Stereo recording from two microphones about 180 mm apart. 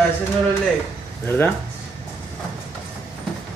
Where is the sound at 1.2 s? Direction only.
10° left (ahead or behind).